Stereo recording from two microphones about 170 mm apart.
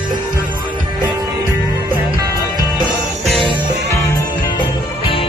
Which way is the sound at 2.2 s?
25° right (ahead or behind).